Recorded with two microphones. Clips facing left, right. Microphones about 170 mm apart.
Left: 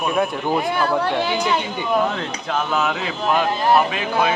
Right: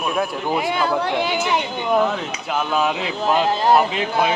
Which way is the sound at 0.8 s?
15° right (ahead or behind).